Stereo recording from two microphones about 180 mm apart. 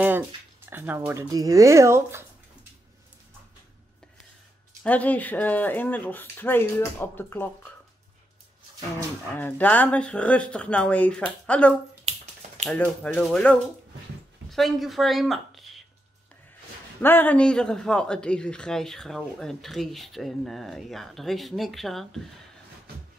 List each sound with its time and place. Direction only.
0.7 s speech: 10° right (ahead or behind)
4.8 s speech: 10° left (ahead or behind)
9.3 s speech: 10° left (ahead or behind)
12.0 s finger snapping: 35° right (ahead or behind)
12.6 s a woman's voice: 5° left (ahead or behind)
17.0 s speech: 10° left (ahead or behind)